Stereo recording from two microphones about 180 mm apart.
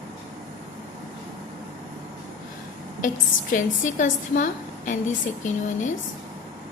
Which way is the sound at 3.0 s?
45° left (ahead or behind).